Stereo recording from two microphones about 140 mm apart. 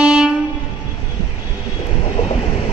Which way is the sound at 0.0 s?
5° right (ahead or behind).